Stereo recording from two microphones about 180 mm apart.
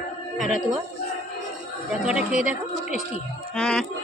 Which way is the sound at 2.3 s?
40° left (ahead or behind).